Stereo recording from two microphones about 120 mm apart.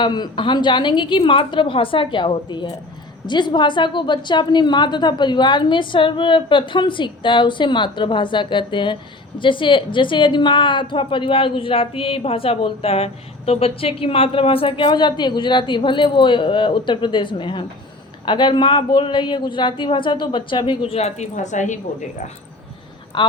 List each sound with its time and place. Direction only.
0.0 s a woman's voice: 40° left (ahead or behind); by 21.8 s 90° left
23.2 s speech: 40° left (ahead or behind)